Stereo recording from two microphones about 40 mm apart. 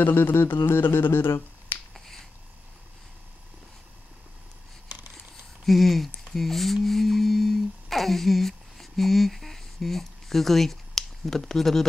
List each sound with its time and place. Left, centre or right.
0.0 s speech: left
2.0 s finger snapping: centre
5.7 s speech: centre
6.3 s cattle: centre
11.2 s speech: centre